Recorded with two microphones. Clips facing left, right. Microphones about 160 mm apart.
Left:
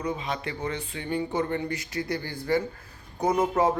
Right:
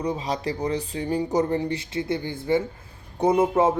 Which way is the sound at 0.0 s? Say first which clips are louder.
Right 4 dB; 35° right (ahead or behind).